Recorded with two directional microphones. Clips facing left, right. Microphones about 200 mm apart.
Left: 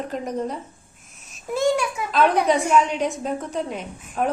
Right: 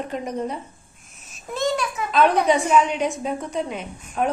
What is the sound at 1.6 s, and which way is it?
A child's voice, 10° left (ahead or behind).